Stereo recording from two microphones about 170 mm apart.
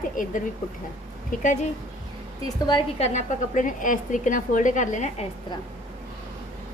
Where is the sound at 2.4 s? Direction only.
25° left (ahead or behind).